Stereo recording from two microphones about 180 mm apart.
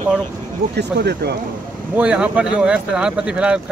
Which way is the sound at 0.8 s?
65° right (ahead or behind).